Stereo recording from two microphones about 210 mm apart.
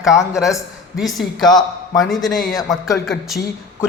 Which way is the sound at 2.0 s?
Centre (ahead or behind).